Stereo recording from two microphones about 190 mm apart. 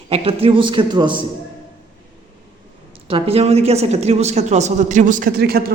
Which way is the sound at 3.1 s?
30° right (ahead or behind).